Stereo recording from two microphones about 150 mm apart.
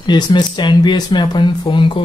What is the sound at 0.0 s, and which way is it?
Speech, 30° left (ahead or behind).